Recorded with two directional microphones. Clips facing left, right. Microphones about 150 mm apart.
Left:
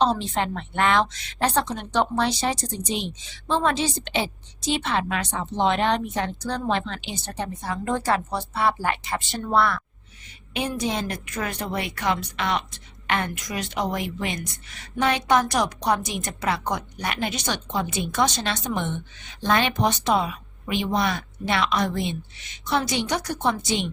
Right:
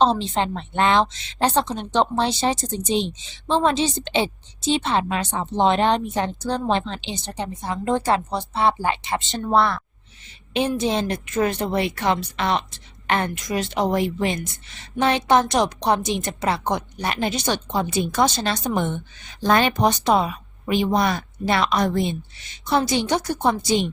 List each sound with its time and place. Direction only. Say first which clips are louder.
0.0 s a woman's voice: right 3 dB; 25° right (ahead or behind)
23.4 s a woman's voice: right 3 dB; 40° right (ahead or behind)